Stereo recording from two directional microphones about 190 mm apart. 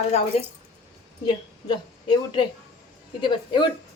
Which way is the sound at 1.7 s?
25° left (ahead or behind).